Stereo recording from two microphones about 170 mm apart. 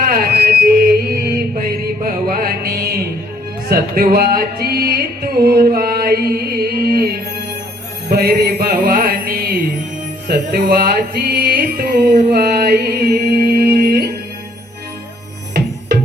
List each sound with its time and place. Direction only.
0.1 s mantra: 60° right (ahead or behind)
2.0 s music: 55° right (ahead or behind)